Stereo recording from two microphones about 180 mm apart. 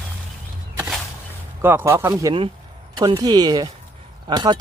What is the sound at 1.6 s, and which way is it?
Speech, 10° right (ahead or behind).